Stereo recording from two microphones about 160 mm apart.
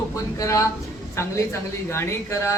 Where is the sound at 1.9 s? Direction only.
15° left (ahead or behind).